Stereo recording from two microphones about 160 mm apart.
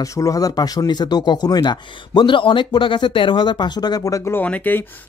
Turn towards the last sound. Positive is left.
turn(degrees=10)  # may be behind; listen again after turning